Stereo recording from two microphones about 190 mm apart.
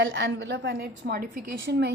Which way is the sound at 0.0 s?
65° right (ahead or behind).